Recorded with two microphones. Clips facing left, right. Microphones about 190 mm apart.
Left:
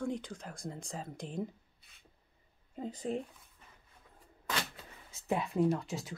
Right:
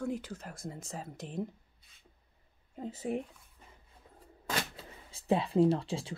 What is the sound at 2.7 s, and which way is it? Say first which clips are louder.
Speech: right 1 dB; centre (ahead or behind).